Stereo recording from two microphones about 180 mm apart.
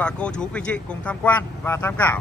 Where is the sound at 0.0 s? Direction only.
5° left (ahead or behind).